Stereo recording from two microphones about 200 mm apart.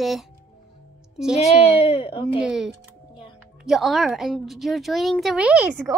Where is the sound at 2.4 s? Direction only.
5° right (ahead or behind).